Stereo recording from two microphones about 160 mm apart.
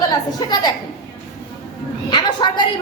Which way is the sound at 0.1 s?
25° left (ahead or behind).